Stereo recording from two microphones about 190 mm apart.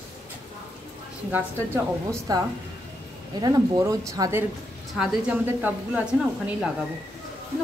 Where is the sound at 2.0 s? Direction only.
20° right (ahead or behind).